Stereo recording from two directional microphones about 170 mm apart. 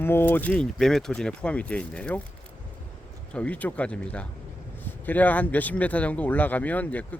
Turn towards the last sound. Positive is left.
turn(degrees=10)  # may be behind; listen again after turning